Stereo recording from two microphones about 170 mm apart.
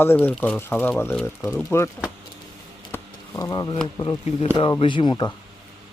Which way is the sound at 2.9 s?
15° left (ahead or behind).